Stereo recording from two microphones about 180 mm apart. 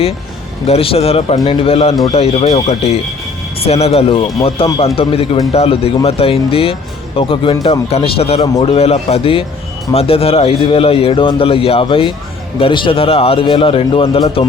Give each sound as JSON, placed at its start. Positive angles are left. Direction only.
{"t": 0.7, "sound": "a man's voice", "side_deg": 35}